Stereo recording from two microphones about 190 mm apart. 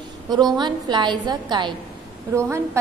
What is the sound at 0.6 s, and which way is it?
A woman's voice, 25° right (ahead or behind).